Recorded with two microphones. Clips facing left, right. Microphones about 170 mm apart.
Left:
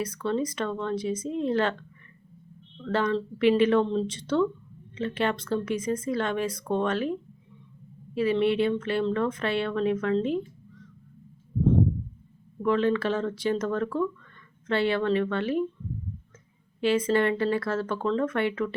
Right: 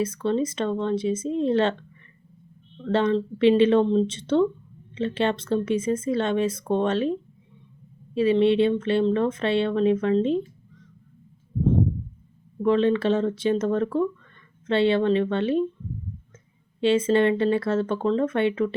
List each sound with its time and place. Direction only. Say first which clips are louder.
0.0 s speech: right 4 dB; 25° right (ahead or behind)
2.8 s speech: right 4 dB; 25° right (ahead or behind)
12.6 s speech: right 4 dB; 25° right (ahead or behind)
16.8 s speech: right 4 dB; 25° right (ahead or behind)